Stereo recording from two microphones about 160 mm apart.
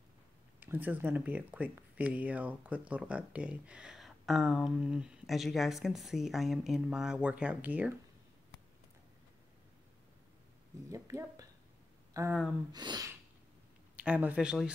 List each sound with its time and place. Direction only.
0.6 s speech: 10° right (ahead or behind)
10.9 s speech: 20° right (ahead or behind)
13.9 s speech: 10° right (ahead or behind)